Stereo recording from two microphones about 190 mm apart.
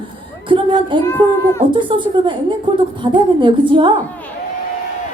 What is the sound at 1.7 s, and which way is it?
A woman's voice, 25° right (ahead or behind).